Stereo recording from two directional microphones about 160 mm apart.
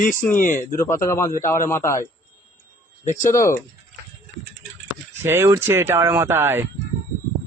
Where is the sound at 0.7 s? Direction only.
20° left (ahead or behind).